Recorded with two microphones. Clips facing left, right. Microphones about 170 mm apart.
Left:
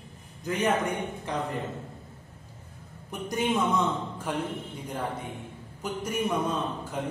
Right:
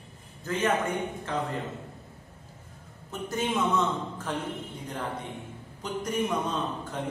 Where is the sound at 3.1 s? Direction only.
15° left (ahead or behind).